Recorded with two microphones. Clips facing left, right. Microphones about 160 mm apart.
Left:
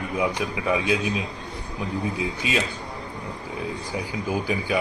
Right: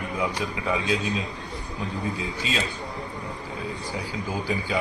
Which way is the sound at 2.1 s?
15° left (ahead or behind).